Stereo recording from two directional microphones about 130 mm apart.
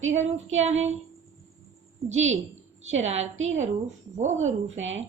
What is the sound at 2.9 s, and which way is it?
A woman's voice, 60° right (ahead or behind).